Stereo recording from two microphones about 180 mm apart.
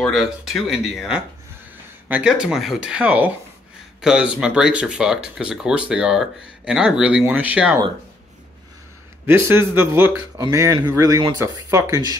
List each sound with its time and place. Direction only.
0.0 s speech: centre (ahead or behind)
9.2 s speech: 10° right (ahead or behind)